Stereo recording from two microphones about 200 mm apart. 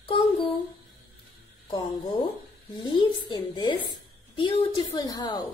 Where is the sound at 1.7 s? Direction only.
25° left (ahead or behind).